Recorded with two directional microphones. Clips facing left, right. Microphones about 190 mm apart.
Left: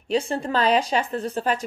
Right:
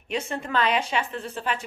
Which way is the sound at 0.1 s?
30° left (ahead or behind).